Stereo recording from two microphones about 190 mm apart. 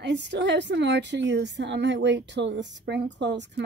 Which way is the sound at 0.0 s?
65° right (ahead or behind).